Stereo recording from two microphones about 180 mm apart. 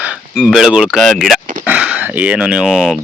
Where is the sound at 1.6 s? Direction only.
5° right (ahead or behind).